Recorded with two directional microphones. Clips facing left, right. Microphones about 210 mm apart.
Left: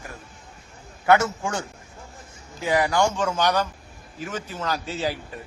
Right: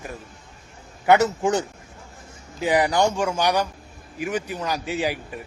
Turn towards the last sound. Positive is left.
turn(degrees=-15)  # may be behind; listen again after turning